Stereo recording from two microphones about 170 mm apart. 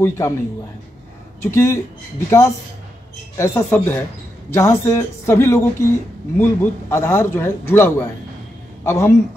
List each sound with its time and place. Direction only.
0.2 s speech: 20° left (ahead or behind)
1.4 s a man's voice: 15° left (ahead or behind)